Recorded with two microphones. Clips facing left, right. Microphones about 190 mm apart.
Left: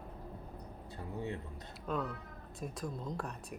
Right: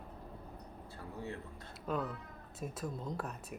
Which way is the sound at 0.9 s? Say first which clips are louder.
Left 3 dB; 20° left (ahead or behind).